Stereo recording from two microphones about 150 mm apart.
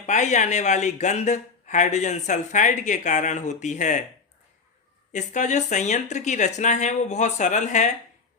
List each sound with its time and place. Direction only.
0.0 s speech: 50° left (ahead or behind)
5.1 s speech: 55° left (ahead or behind)